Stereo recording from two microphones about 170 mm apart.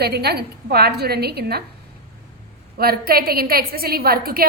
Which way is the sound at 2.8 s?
65° right (ahead or behind).